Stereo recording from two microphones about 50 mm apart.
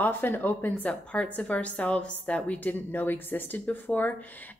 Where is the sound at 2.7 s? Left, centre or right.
Left.